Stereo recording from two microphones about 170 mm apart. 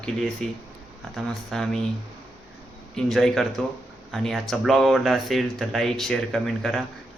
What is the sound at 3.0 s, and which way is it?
Speech, centre (ahead or behind).